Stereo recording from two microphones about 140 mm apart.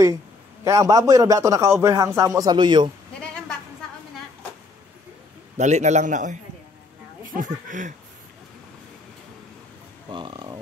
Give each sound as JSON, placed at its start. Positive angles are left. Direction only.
{"t": 0.7, "sound": "a man's voice", "side_deg": -25}
{"t": 5.6, "sound": "a man's voice", "side_deg": -55}
{"t": 7.3, "sound": "speech", "side_deg": -70}
{"t": 10.0, "sound": "speech", "side_deg": -30}